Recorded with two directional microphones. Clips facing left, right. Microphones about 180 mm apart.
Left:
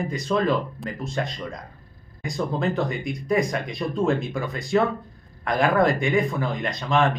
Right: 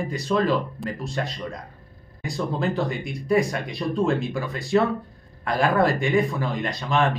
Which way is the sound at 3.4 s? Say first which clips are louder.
Even; 35° right (ahead or behind).